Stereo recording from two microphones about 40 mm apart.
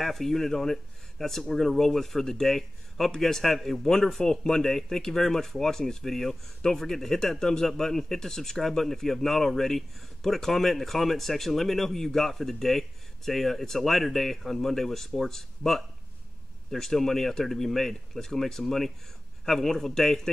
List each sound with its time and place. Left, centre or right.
0.0 s speech: centre